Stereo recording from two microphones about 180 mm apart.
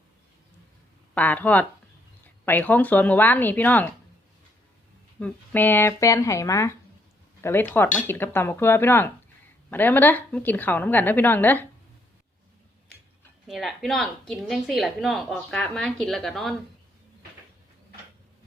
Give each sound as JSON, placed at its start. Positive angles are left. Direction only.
{"t": 1.1, "sound": "a woman's voice", "side_deg": 10}
{"t": 5.2, "sound": "a woman's voice", "side_deg": 10}
{"t": 13.5, "sound": "a woman's voice", "side_deg": 0}